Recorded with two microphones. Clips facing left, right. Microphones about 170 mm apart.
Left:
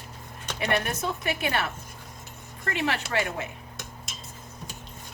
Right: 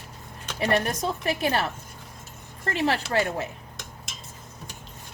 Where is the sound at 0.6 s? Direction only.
35° right (ahead or behind).